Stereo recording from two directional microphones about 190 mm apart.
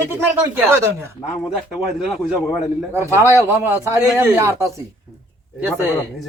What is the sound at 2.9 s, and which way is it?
A man's voice, 15° right (ahead or behind).